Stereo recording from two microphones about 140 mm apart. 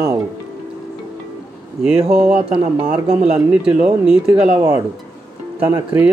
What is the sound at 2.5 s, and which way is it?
Speech, 45° right (ahead or behind).